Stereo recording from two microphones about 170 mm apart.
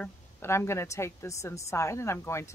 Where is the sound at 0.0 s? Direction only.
15° left (ahead or behind).